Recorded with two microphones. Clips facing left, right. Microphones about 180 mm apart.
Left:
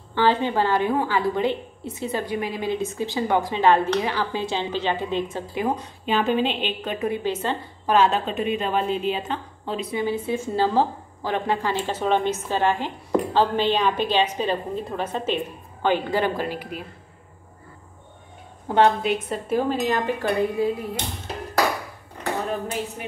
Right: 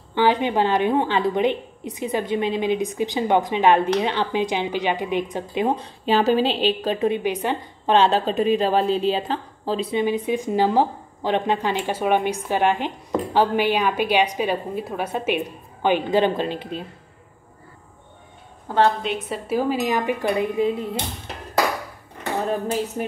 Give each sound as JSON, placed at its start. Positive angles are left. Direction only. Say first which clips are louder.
{"t": 0.1, "sound": "a woman's voice", "louder": "right 2 dB", "side_deg": -15}
{"t": 7.2, "sound": "a woman's voice", "louder": "right 2 dB", "side_deg": -15}
{"t": 7.9, "sound": "a woman's voice", "louder": "right 2 dB", "side_deg": -30}
{"t": 10.0, "sound": "speech", "louder": "right 3 dB", "side_deg": -15}
{"t": 19.2, "sound": "speech", "louder": "right 1 dB", "side_deg": -5}
{"t": 22.5, "sound": "a woman's voice", "louder": "right 4 dB", "side_deg": -35}